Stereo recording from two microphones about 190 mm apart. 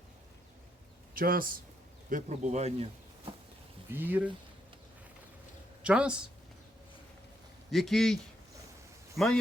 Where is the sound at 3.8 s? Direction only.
10° right (ahead or behind).